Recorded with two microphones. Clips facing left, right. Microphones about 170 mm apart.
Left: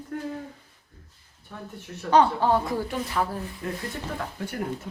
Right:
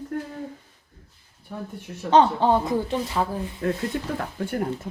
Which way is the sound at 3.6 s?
70° right (ahead or behind).